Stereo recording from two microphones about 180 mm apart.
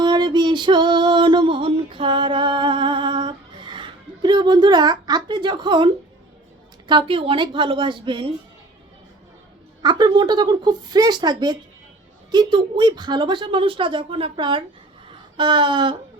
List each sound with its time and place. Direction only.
0.0 s music: 25° right (ahead or behind)
6.8 s speech: 30° right (ahead or behind)
9.8 s speech: 25° right (ahead or behind)